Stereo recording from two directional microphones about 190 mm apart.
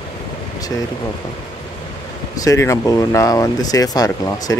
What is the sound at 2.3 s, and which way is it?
Speech, 15° left (ahead or behind).